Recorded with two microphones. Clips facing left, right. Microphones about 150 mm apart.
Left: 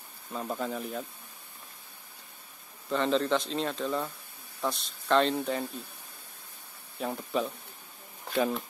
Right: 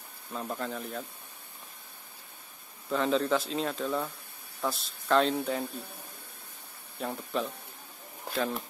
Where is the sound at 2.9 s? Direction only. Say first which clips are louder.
Even; 5° right (ahead or behind).